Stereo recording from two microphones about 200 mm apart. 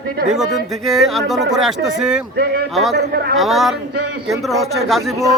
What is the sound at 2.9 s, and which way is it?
Speech, 55° right (ahead or behind).